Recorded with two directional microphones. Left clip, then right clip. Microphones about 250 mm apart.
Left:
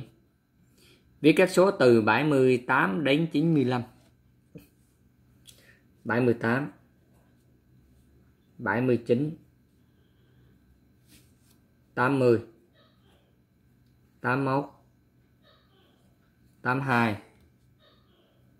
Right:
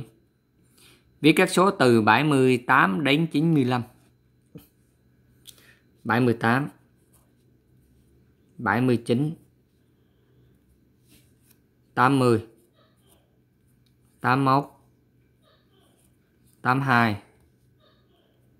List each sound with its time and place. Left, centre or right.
0.7 s speech: right
5.4 s a sound: right
8.6 s speech: right
11.9 s speech: right
14.2 s speech: right
16.6 s speech: right